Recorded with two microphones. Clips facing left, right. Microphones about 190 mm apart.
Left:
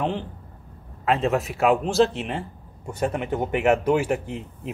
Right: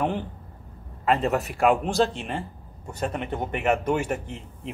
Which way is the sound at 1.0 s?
Centre (ahead or behind).